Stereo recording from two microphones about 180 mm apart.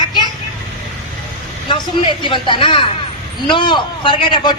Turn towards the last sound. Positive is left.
turn(degrees=25)  # may be behind; listen again after turning